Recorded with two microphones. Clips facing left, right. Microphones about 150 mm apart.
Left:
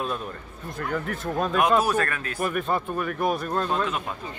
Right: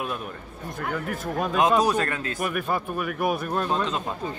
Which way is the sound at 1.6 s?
20° right (ahead or behind).